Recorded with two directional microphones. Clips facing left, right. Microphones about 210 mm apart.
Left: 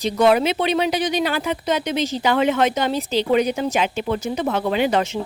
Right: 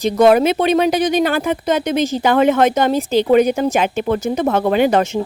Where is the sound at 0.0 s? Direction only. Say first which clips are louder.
Right 5 dB; 45° right (ahead or behind).